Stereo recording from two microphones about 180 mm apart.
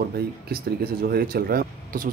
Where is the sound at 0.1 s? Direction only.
55° right (ahead or behind).